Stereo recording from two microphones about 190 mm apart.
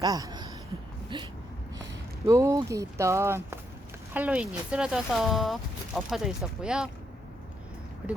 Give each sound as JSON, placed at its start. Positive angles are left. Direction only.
{"t": 0.0, "sound": "a sound", "side_deg": -20}
{"t": 2.2, "sound": "speech", "side_deg": -15}
{"t": 8.0, "sound": "speech", "side_deg": -5}